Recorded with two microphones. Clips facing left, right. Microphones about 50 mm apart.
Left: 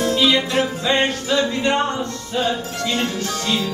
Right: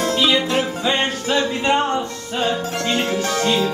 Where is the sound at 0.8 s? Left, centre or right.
Centre.